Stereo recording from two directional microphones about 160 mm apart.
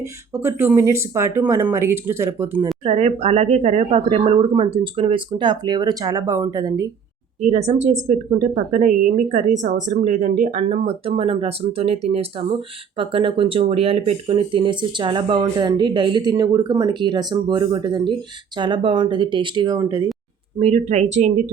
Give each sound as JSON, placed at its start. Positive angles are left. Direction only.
{"t": 0.0, "sound": "speech", "side_deg": -15}
{"t": 2.8, "sound": "speech", "side_deg": -40}
{"t": 7.4, "sound": "speech", "side_deg": -45}
{"t": 20.6, "sound": "speech", "side_deg": -40}